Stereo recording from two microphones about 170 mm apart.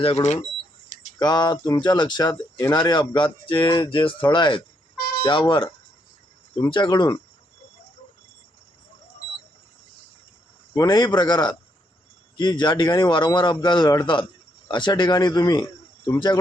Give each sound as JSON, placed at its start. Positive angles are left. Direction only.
{"t": 0.2, "sound": "speech", "side_deg": 45}
{"t": 1.2, "sound": "a man's voice", "side_deg": 25}
{"t": 10.8, "sound": "a man's voice", "side_deg": 25}